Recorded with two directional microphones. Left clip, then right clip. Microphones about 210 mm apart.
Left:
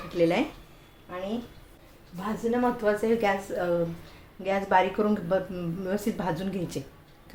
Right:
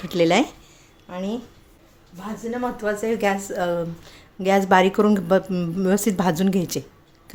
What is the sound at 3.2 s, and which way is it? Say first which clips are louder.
Speech: right 6 dB; 35° right (ahead or behind).